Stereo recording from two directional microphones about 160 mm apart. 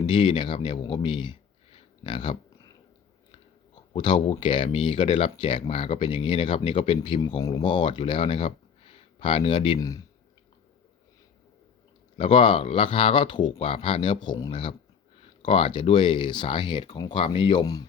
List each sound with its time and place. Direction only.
0.0 s speech: 30° left (ahead or behind)
3.9 s speech: 30° left (ahead or behind)
12.1 s speech: 30° left (ahead or behind)